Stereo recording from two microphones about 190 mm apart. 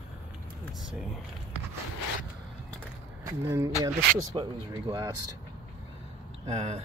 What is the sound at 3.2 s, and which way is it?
Speech, 15° right (ahead or behind).